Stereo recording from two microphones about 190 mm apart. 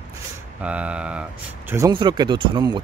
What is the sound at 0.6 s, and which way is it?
Speech, 5° right (ahead or behind).